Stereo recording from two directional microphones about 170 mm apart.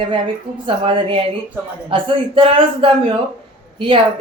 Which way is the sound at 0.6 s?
30° right (ahead or behind).